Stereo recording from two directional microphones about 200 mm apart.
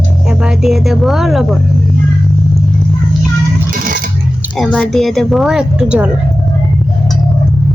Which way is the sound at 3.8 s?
45° right (ahead or behind).